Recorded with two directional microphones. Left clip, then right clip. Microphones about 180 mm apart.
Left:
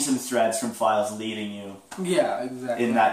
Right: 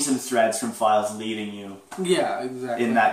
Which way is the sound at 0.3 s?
10° left (ahead or behind).